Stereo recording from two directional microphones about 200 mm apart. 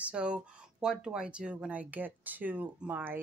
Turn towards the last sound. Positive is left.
turn(degrees=-10)  # may be behind; listen again after turning